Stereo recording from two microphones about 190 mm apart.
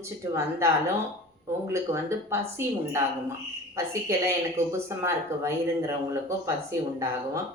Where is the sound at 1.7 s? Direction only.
15° right (ahead or behind).